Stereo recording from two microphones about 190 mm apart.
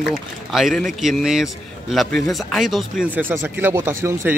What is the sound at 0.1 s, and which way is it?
A man's voice, centre (ahead or behind).